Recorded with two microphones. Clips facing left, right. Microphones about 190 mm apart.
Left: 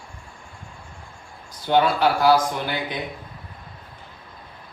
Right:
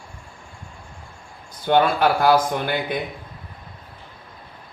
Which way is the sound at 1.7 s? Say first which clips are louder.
Right 1 dB; 55° right (ahead or behind).